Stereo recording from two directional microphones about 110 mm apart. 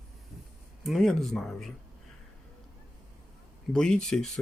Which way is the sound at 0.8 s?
Centre (ahead or behind).